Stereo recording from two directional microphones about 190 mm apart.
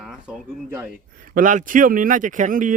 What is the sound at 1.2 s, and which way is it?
Speech, 45° right (ahead or behind).